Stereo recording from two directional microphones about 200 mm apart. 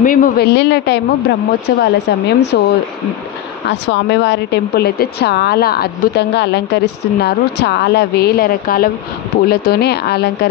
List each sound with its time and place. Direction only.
0.0 s a woman's voice: 45° left (ahead or behind); by 2.6 s 60° left (ahead or behind)
3.6 s a woman's voice: 60° left (ahead or behind)